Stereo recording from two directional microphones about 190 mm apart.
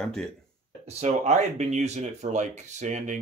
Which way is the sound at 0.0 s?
5° left (ahead or behind).